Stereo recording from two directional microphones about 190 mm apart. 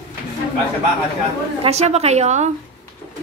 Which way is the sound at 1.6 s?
35° right (ahead or behind).